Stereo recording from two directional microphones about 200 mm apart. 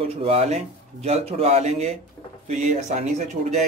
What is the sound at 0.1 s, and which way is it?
Speech, 30° right (ahead or behind).